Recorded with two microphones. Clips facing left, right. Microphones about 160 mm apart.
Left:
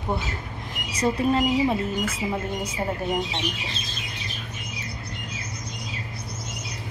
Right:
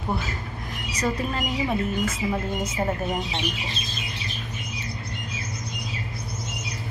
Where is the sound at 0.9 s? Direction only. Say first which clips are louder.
Left 5 dB; 30° left (ahead or behind).